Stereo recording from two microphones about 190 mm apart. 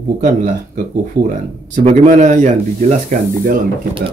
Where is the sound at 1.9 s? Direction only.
40° right (ahead or behind).